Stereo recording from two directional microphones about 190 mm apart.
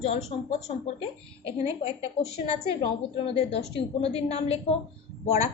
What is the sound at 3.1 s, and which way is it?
A woman's voice, 30° left (ahead or behind).